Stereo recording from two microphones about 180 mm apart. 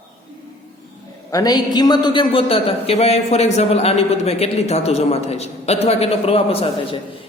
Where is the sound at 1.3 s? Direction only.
20° left (ahead or behind).